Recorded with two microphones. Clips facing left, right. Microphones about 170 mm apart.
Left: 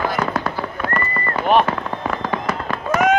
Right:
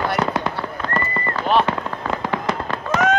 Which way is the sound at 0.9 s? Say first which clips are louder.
Right 2 dB; 25° right (ahead or behind).